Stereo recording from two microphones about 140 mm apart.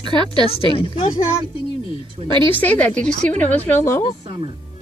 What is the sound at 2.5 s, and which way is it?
A woman's voice, 10° left (ahead or behind).